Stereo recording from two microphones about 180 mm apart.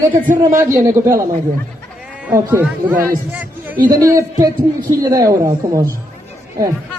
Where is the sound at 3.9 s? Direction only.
20° right (ahead or behind).